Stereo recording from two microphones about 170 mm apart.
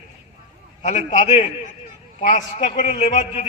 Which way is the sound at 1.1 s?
40° left (ahead or behind).